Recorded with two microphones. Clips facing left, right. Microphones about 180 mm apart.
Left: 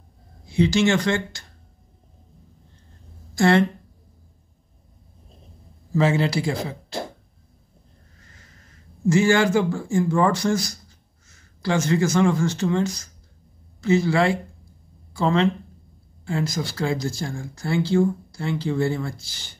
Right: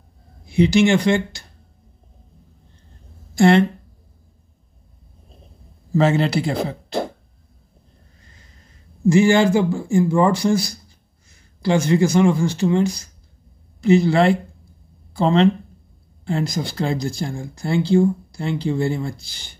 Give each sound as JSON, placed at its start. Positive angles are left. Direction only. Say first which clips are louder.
{"t": 0.5, "sound": "speech", "louder": "right 4 dB", "side_deg": -15}
{"t": 3.3, "sound": "speech", "louder": "right 4 dB", "side_deg": -20}
{"t": 6.0, "sound": "speech", "louder": "right 2 dB", "side_deg": -65}
{"t": 9.0, "sound": "speech", "louder": "right 4 dB", "side_deg": -15}
{"t": 16.5, "sound": "speech", "louder": "right 2 dB", "side_deg": -20}